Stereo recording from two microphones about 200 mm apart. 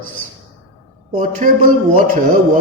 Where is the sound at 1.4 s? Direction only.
40° right (ahead or behind).